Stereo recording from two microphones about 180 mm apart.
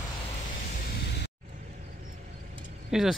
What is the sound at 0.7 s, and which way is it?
Music, 65° left (ahead or behind).